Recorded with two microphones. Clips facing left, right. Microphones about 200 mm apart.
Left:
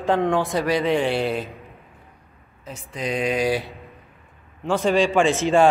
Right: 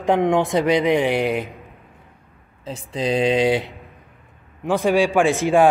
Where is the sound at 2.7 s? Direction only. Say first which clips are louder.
Right 5 dB; 30° right (ahead or behind); by 5.6 s 15° right (ahead or behind).